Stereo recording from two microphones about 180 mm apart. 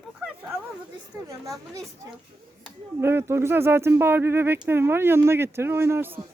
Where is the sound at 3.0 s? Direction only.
15° right (ahead or behind).